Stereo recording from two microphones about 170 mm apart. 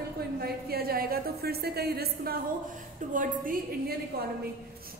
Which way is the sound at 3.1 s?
50° right (ahead or behind).